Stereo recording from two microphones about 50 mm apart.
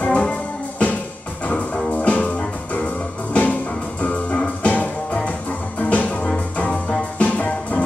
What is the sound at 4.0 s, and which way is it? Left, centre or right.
Music, left.